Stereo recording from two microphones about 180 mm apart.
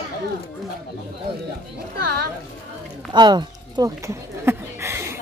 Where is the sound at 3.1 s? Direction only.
25° right (ahead or behind).